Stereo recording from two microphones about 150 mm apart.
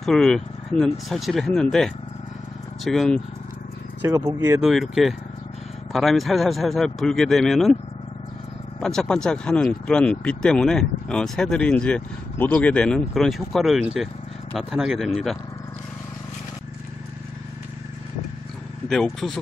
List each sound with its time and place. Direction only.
0.0 s speech: 5° left (ahead or behind)
4.0 s speech: 20° right (ahead or behind)
4.6 s speech: centre (ahead or behind)
8.8 s speech: 5° left (ahead or behind)
19.1 s speech: centre (ahead or behind)